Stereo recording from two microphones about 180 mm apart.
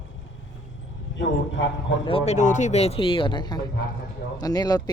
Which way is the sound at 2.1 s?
35° left (ahead or behind).